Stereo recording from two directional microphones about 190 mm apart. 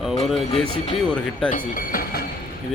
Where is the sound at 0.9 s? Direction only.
5° left (ahead or behind).